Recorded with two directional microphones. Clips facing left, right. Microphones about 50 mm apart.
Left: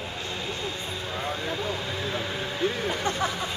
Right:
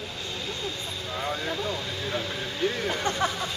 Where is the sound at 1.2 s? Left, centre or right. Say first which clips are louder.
Right 1 dB; centre.